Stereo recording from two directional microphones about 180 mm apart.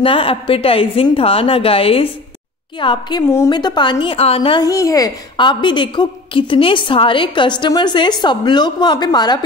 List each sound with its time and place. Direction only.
0.0 s a woman's voice: 30° left (ahead or behind)